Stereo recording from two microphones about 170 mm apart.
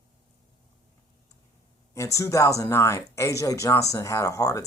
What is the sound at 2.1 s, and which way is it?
Speech, 15° left (ahead or behind).